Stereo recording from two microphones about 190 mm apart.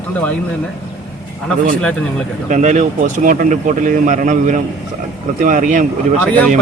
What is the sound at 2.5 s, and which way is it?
Speech, 40° right (ahead or behind).